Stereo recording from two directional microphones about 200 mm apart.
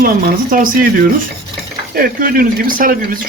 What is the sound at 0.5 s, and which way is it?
Speech, 40° right (ahead or behind).